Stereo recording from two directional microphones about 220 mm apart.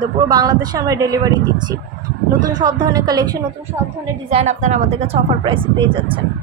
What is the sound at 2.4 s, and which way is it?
Speech, 20° right (ahead or behind).